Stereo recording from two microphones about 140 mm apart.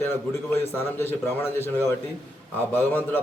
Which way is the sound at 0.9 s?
15° left (ahead or behind).